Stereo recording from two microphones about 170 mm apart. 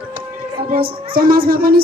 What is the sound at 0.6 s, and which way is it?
A woman's voice, 60° right (ahead or behind).